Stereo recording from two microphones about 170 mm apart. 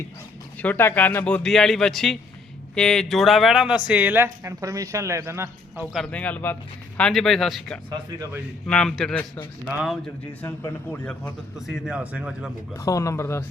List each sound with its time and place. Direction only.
0.6 s speech: 10° left (ahead or behind); by 5.8 s 15° right (ahead or behind)
5.9 s speech: 5° left (ahead or behind)
9.7 s speech: centre (ahead or behind)
10.4 s speech: 15° left (ahead or behind); by 12.5 s 5° right (ahead or behind)
12.7 s speech: 20° left (ahead or behind)